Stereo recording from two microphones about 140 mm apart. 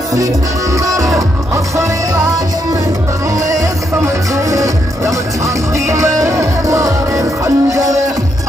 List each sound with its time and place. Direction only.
0.1 s music: 25° right (ahead or behind)
3.4 s music: 25° right (ahead or behind)